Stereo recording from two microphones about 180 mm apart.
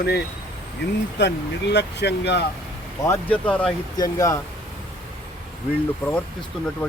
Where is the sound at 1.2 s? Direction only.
70° left (ahead or behind).